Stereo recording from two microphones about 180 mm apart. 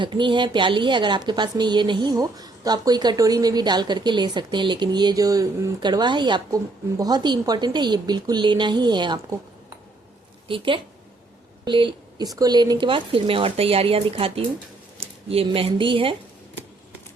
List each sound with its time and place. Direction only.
0.0 s a woman's voice: 25° right (ahead or behind)
11.6 s a woman's voice: 25° right (ahead or behind)